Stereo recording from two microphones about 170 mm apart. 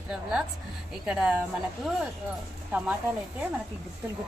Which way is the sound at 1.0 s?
5° right (ahead or behind).